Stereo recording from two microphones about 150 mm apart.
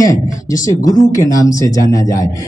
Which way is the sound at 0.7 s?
25° left (ahead or behind).